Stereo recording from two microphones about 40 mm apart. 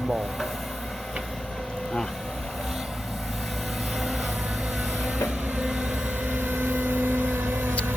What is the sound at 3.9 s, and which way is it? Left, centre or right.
Vehicle, centre.